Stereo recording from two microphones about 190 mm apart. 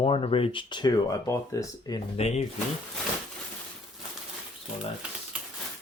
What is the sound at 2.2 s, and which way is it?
Speech, 35° left (ahead or behind).